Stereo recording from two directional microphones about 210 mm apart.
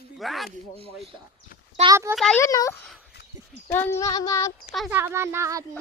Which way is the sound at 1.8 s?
15° right (ahead or behind).